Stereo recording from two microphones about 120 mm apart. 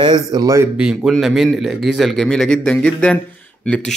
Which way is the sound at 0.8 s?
5° right (ahead or behind).